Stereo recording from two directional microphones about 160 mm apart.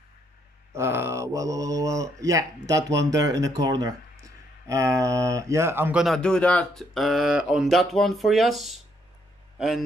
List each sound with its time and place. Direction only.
0.7 s speech: 15° right (ahead or behind)
6.0 s a man's voice: 5° left (ahead or behind)